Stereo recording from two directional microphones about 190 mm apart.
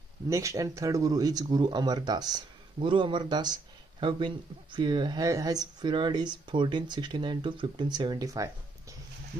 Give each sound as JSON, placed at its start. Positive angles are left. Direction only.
{"t": 0.3, "sound": "speech", "side_deg": -15}